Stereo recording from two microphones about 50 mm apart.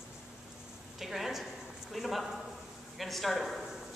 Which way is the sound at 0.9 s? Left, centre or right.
Centre.